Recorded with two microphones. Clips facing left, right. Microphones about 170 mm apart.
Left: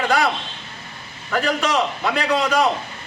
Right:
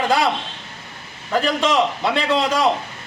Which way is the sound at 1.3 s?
25° right (ahead or behind).